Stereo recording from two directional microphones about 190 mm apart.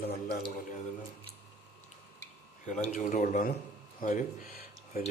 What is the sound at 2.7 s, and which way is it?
A man's voice, 40° left (ahead or behind).